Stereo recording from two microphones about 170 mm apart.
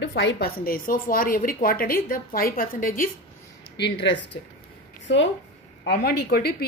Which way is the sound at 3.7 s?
90° left.